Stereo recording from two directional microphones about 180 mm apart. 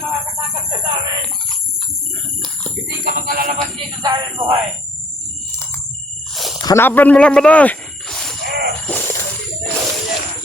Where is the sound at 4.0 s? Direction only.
30° right (ahead or behind).